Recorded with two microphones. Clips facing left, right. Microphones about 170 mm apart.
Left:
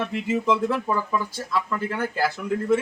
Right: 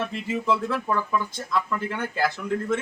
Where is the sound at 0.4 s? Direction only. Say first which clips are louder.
Even; 15° left (ahead or behind).